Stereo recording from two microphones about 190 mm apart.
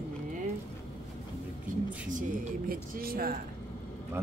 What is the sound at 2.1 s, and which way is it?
Speech, 45° right (ahead or behind).